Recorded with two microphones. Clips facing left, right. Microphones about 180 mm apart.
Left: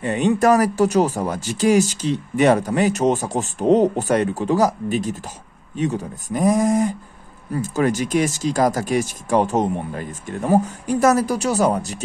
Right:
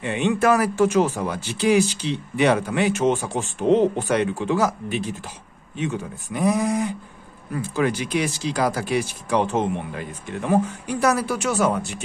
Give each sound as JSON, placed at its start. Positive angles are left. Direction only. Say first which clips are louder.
{"t": 0.0, "sound": "speech", "louder": "left 3 dB", "side_deg": 40}